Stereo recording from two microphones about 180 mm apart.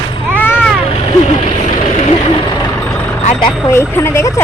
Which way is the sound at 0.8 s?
30° left (ahead or behind).